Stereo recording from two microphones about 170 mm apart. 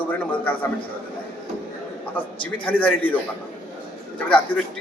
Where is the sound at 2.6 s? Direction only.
10° left (ahead or behind).